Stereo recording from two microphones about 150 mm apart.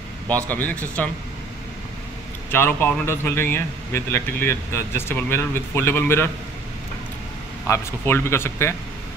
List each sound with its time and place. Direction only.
0.5 s speech: 10° left (ahead or behind)
2.5 s speech: 15° left (ahead or behind)
7.6 s speech: 15° left (ahead or behind)